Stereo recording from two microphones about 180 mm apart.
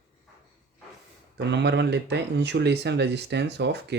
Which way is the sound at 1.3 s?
70° right (ahead or behind).